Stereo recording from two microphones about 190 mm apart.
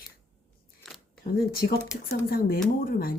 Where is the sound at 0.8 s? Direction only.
Centre (ahead or behind).